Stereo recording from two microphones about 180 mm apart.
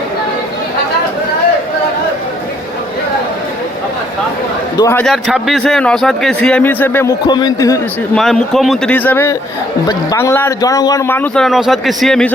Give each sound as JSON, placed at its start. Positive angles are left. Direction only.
{"t": 4.8, "sound": "a man's voice", "side_deg": 15}
{"t": 5.0, "sound": "a man's voice", "side_deg": 0}
{"t": 7.3, "sound": "a man's voice", "side_deg": 25}
{"t": 8.1, "sound": "a man's voice", "side_deg": 0}